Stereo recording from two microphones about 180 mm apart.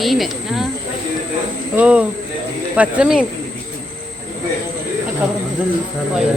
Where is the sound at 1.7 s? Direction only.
5° right (ahead or behind).